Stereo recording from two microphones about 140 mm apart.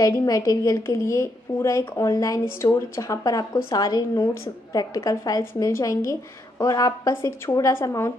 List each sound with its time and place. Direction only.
0.0 s a woman's voice: 25° left (ahead or behind)